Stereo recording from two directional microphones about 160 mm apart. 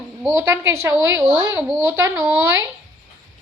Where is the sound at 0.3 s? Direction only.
15° right (ahead or behind).